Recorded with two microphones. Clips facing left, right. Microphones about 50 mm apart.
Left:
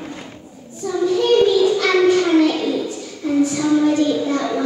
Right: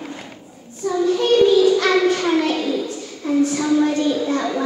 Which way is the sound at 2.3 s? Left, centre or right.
Centre.